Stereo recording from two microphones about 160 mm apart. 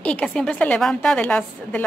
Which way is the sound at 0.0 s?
10° left (ahead or behind).